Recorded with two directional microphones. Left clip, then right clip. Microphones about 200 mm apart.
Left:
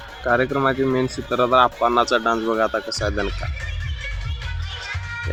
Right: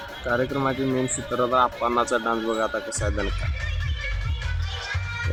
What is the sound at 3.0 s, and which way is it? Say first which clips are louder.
Music: left 4 dB; 10° left (ahead or behind).